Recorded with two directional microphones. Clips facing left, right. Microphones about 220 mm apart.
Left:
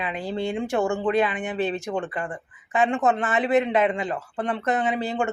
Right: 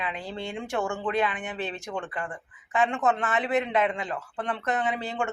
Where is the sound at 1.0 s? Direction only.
5° left (ahead or behind).